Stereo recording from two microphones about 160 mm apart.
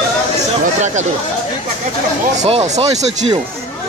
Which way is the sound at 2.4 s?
40° right (ahead or behind).